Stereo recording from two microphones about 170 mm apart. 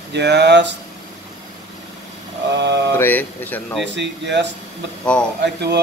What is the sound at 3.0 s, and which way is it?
Speech, 10° left (ahead or behind).